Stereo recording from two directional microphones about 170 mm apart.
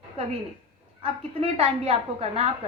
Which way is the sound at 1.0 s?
35° right (ahead or behind).